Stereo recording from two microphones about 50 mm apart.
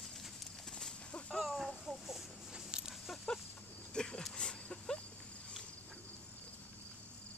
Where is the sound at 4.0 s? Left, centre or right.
Centre.